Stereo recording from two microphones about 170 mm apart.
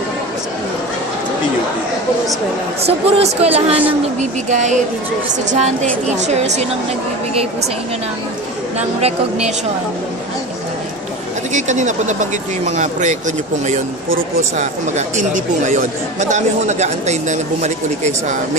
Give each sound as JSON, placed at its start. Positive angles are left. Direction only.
{"t": 2.8, "sound": "speech", "side_deg": -35}
{"t": 8.7, "sound": "speech", "side_deg": -40}
{"t": 11.5, "sound": "speech", "side_deg": -45}
{"t": 14.6, "sound": "speech", "side_deg": -45}